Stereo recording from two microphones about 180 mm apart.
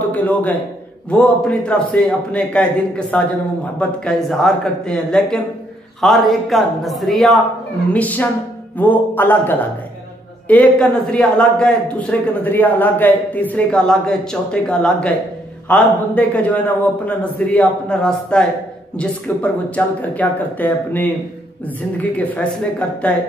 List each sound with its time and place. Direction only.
0.1 s a man's voice: 10° left (ahead or behind)